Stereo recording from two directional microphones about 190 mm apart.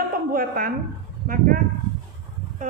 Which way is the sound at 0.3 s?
50° right (ahead or behind).